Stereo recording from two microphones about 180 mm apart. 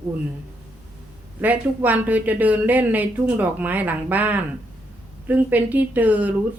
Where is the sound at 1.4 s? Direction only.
10° right (ahead or behind).